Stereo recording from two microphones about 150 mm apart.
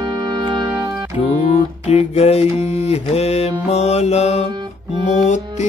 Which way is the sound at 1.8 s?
45° left (ahead or behind).